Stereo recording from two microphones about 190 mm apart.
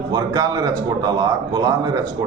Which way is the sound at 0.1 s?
20° right (ahead or behind).